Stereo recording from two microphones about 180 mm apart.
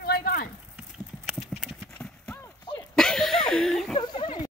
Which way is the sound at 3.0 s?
Centre (ahead or behind).